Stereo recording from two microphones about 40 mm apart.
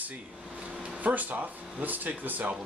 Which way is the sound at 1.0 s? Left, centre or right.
Right.